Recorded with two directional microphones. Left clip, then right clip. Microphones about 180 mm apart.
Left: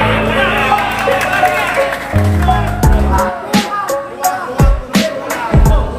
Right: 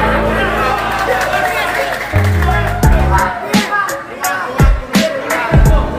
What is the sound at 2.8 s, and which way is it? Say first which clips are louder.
Music: right 1 dB; centre (ahead or behind).